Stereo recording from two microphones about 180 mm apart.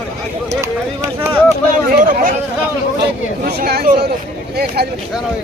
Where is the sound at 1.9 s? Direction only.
50° right (ahead or behind).